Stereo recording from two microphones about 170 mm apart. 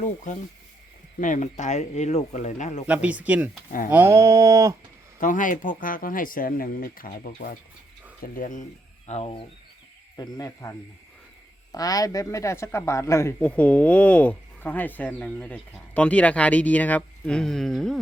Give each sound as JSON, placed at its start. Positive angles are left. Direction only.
{"t": 0.3, "sound": "speech", "side_deg": 45}
{"t": 2.8, "sound": "speech", "side_deg": -10}
{"t": 5.2, "sound": "speech", "side_deg": 50}
{"t": 9.0, "sound": "speech", "side_deg": 35}
{"t": 10.2, "sound": "speech", "side_deg": 20}